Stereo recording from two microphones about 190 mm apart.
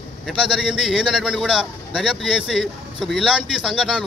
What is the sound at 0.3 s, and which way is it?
A man's voice, 5° right (ahead or behind).